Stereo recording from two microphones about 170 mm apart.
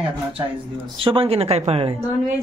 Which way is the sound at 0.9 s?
30° right (ahead or behind).